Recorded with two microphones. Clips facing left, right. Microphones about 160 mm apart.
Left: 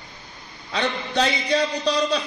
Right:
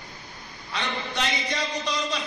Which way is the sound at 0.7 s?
70° left (ahead or behind).